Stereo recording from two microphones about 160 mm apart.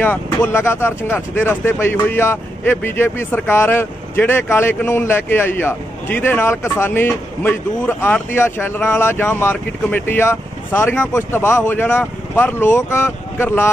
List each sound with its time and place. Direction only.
0.0 s speech: 10° left (ahead or behind)